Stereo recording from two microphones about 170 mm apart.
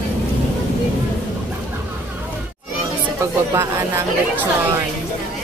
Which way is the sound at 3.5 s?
15° right (ahead or behind).